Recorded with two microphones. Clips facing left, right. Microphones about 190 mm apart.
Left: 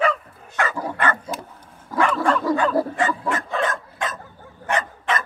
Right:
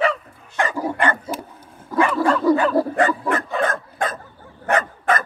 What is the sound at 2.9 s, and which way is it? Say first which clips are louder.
Dog: right 4 dB; 55° right (ahead or behind).